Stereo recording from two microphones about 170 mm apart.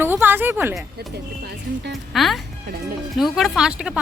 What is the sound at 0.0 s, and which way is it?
Speech, 10° right (ahead or behind).